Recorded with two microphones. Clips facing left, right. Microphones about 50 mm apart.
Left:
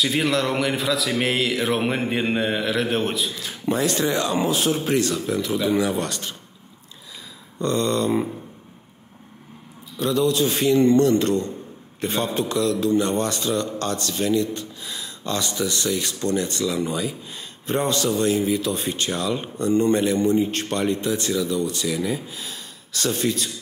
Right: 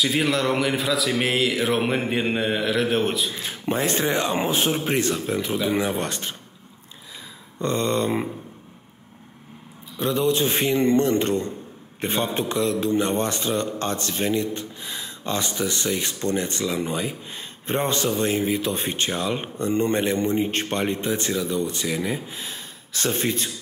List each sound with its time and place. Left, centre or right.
0.0 s speech: centre
3.3 s a man's voice: right
7.6 s a man's voice: right
9.9 s a man's voice: right